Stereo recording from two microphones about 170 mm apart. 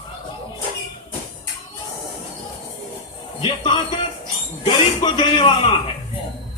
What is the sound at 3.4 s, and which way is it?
A man's voice, 30° left (ahead or behind).